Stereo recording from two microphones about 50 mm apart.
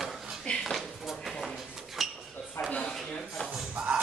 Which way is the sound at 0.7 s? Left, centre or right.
Centre.